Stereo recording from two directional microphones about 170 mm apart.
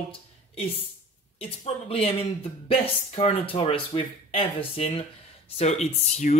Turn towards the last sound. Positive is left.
turn(degrees=40)  # may be behind; listen again after turning